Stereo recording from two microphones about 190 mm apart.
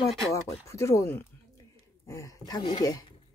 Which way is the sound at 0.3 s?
15° left (ahead or behind).